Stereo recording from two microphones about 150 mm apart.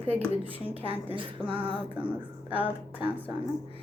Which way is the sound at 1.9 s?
10° right (ahead or behind).